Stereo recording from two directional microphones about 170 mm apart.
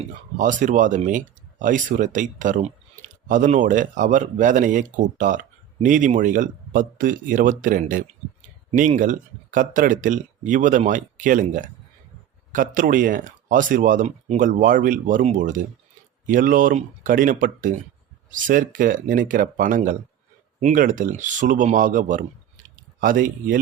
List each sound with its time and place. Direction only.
0.3 s speech: 50° right (ahead or behind)